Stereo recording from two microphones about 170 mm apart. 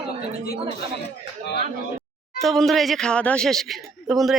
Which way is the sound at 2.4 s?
Centre (ahead or behind).